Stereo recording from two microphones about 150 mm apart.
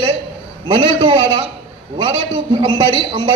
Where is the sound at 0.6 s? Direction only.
35° right (ahead or behind).